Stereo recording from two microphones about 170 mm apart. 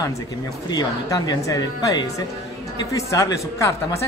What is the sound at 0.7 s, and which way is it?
A woman's voice, 25° left (ahead or behind).